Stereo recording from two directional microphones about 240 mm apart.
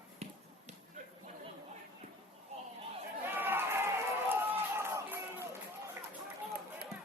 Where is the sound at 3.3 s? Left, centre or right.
Centre.